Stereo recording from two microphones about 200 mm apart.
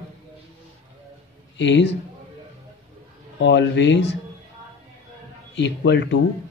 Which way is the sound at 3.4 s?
60° left (ahead or behind).